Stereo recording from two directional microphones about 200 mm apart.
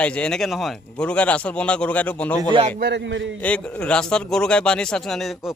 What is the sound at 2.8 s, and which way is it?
Speech, 60° right (ahead or behind).